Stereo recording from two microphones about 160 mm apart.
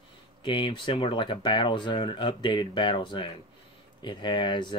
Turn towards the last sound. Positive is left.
turn(degrees=30)  # may be behind; listen again after turning